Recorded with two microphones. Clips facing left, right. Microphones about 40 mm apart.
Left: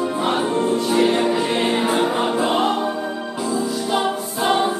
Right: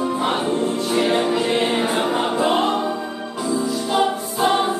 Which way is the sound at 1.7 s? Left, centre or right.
Centre.